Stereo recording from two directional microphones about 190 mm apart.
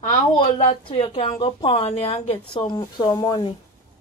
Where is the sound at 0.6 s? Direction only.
30° left (ahead or behind).